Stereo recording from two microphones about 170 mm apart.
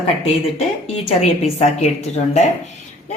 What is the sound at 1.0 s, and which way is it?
A woman's voice, 40° left (ahead or behind).